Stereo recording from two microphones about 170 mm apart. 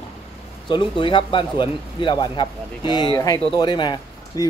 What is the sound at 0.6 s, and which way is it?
Speech, 30° left (ahead or behind).